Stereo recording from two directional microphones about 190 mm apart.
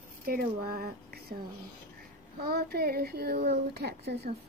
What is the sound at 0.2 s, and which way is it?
Speech, 50° right (ahead or behind).